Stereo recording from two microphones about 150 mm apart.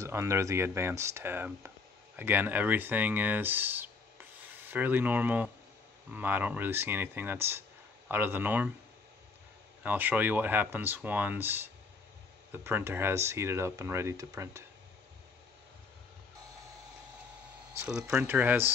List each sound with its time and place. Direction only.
0.0 s speech: 20° right (ahead or behind)
9.8 s speech: 10° right (ahead or behind)
17.7 s speech: 10° right (ahead or behind)